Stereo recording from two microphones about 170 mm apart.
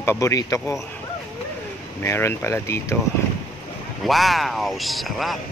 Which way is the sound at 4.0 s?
Centre (ahead or behind).